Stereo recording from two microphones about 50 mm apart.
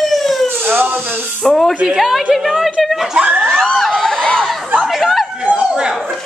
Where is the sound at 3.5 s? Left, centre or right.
Centre.